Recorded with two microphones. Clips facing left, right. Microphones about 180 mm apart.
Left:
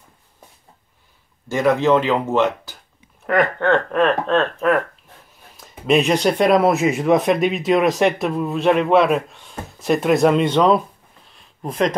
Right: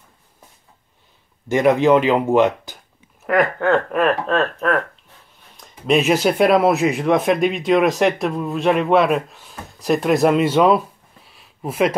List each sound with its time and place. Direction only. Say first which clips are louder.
1.5 s speech: right 2 dB; 15° right (ahead or behind)
3.3 s speech: even; 5° right (ahead or behind)
11.2 s a sound: right 1 dB; 5° right (ahead or behind)